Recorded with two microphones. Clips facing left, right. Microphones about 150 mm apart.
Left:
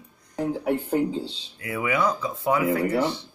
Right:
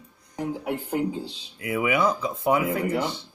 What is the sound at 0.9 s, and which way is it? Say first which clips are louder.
Speech: left 3 dB; 15° right (ahead or behind).